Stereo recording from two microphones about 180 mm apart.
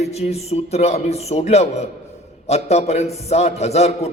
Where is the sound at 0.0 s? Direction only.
35° left (ahead or behind).